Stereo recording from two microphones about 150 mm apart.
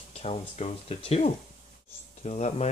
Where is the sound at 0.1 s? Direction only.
45° left (ahead or behind).